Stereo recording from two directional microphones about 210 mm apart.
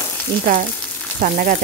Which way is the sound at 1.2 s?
40° right (ahead or behind).